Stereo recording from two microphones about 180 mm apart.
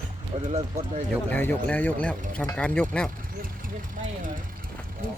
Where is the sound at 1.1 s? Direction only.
10° left (ahead or behind).